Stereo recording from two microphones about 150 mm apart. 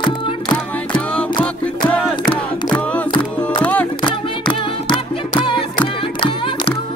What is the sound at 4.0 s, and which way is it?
Music, 35° left (ahead or behind).